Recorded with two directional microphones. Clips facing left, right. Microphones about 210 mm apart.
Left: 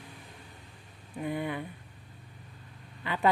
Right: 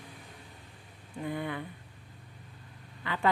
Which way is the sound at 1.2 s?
20° left (ahead or behind).